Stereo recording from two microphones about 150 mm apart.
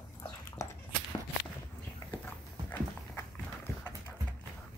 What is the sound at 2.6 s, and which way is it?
Dog, 15° left (ahead or behind).